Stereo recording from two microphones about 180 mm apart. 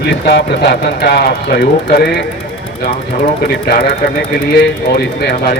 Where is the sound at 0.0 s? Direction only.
65° left (ahead or behind).